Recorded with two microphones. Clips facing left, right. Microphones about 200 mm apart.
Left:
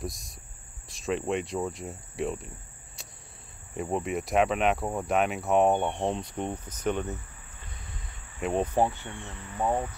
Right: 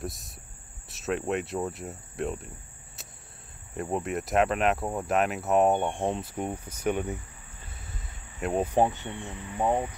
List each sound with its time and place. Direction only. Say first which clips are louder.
0.0 s cricket: even; centre (ahead or behind)
8.4 s cricket: even; centre (ahead or behind)
8.7 s speech: right 2 dB; 20° right (ahead or behind)